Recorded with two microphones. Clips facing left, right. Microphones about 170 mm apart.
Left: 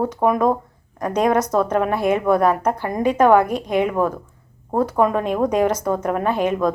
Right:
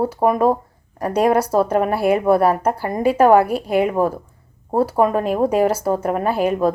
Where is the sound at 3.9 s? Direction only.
30° right (ahead or behind).